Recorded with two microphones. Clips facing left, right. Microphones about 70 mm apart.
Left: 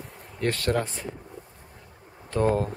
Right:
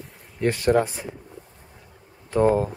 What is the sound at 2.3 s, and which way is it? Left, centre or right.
Speech, centre.